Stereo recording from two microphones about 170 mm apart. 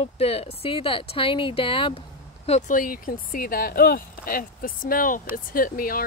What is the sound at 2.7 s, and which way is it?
Speech, 55° left (ahead or behind).